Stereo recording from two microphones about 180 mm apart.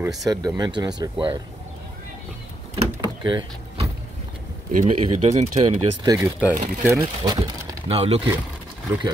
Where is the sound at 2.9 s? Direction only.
25° right (ahead or behind).